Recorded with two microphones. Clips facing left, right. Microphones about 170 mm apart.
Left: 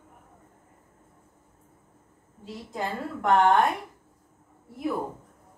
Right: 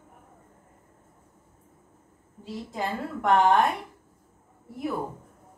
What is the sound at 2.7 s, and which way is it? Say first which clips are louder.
Speech: even; centre (ahead or behind).